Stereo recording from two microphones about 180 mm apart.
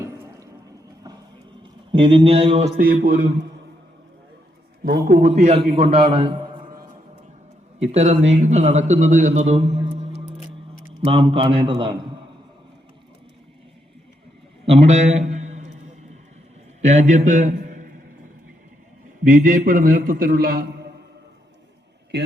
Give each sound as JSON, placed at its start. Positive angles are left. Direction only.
{"t": 1.9, "sound": "a man's voice", "side_deg": -30}
{"t": 2.7, "sound": "a man's voice", "side_deg": -55}
{"t": 5.0, "sound": "a man's voice", "side_deg": -40}
{"t": 7.8, "sound": "a man's voice", "side_deg": -40}
{"t": 11.0, "sound": "a man's voice", "side_deg": -30}
{"t": 14.7, "sound": "a man's voice", "side_deg": -35}
{"t": 16.8, "sound": "a man's voice", "side_deg": -40}
{"t": 19.2, "sound": "a man's voice", "side_deg": -50}
{"t": 22.1, "sound": "a man's voice", "side_deg": -70}